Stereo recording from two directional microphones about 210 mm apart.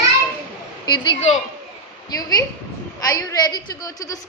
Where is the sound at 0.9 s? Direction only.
20° left (ahead or behind).